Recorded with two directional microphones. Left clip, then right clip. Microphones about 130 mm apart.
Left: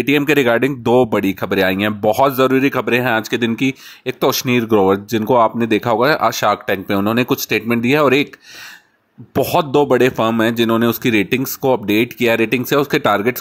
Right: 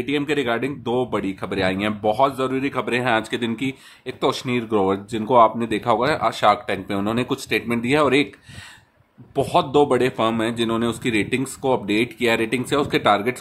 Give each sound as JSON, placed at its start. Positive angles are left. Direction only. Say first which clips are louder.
{"t": 0.3, "sound": "speech", "louder": "left 9 dB", "side_deg": 60}
{"t": 9.3, "sound": "speech", "louder": "left 4 dB", "side_deg": 55}